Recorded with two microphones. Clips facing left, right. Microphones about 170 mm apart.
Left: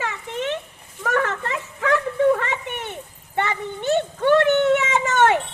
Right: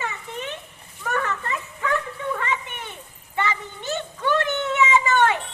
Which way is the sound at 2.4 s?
70° left (ahead or behind).